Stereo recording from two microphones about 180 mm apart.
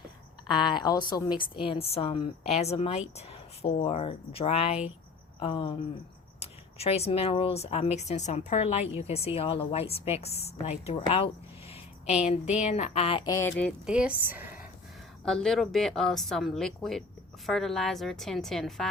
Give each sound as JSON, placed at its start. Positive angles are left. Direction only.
{"t": 0.4, "sound": "a woman's voice", "side_deg": 25}
{"t": 13.8, "sound": "speech", "side_deg": -5}
{"t": 15.2, "sound": "a woman's voice", "side_deg": 5}